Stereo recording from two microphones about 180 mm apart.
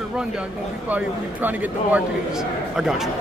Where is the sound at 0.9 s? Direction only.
10° right (ahead or behind).